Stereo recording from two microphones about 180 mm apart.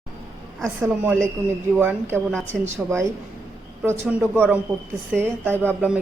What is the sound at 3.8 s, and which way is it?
A woman's voice, 10° right (ahead or behind).